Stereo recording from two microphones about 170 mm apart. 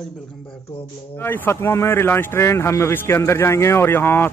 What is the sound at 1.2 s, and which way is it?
Speech, 15° left (ahead or behind).